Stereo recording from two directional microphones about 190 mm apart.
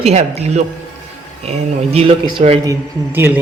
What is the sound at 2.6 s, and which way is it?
Speech, 10° right (ahead or behind).